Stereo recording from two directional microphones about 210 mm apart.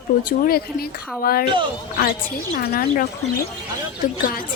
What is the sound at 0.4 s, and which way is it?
Speech, 45° left (ahead or behind).